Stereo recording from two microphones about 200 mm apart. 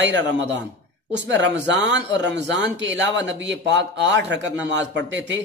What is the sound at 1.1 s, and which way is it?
Speech, 65° right (ahead or behind).